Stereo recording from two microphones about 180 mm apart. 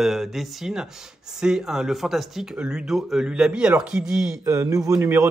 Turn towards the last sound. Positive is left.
turn(degrees=-15)  # may be behind; listen again after turning